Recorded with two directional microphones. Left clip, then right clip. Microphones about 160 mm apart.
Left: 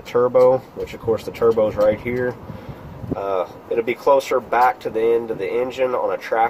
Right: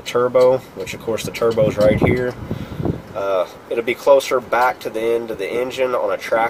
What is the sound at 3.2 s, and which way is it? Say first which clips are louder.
Speech: right 3 dB; 35° left (ahead or behind).